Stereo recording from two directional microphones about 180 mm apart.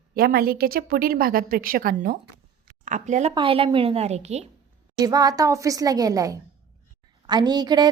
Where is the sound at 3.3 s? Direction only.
30° right (ahead or behind).